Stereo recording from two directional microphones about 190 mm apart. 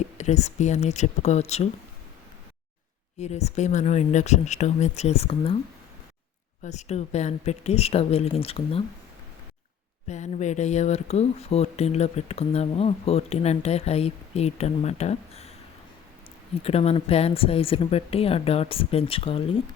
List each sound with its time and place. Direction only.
0.2 s speech: 35° left (ahead or behind)
3.2 s speech: 35° left (ahead or behind)
6.6 s speech: 35° left (ahead or behind)
10.1 s speech: 40° left (ahead or behind)
16.6 s speech: 30° left (ahead or behind)